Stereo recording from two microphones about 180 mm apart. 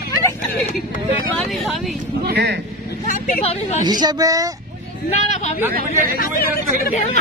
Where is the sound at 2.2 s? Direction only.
65° right (ahead or behind).